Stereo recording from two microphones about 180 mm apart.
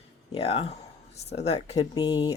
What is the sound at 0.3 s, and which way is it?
Speech, 35° left (ahead or behind).